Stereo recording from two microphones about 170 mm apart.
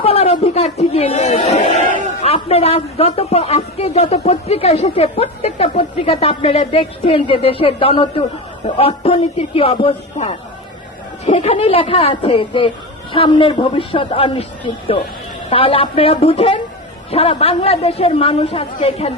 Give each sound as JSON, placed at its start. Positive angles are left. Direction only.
{"t": 0.0, "sound": "speech", "side_deg": 35}